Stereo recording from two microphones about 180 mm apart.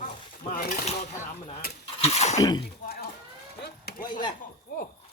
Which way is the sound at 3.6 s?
65° left (ahead or behind).